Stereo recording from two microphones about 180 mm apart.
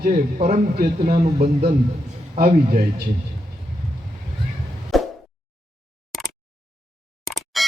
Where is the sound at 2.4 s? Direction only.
55° right (ahead or behind).